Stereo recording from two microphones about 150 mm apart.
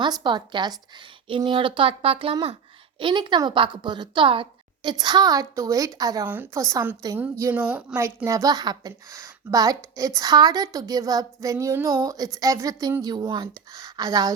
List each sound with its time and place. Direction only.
0.0 s a woman's voice: 30° right (ahead or behind)
6.2 s speech: 15° right (ahead or behind)
7.9 s speech: 20° right (ahead or behind)